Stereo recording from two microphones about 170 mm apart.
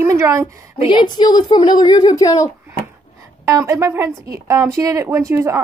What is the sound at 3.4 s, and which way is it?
A woman's voice, 15° right (ahead or behind).